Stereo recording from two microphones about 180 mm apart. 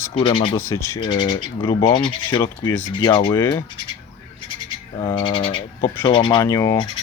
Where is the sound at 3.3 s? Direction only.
15° left (ahead or behind).